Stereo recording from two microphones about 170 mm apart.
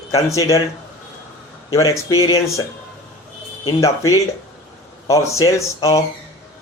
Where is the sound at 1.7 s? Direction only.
20° left (ahead or behind).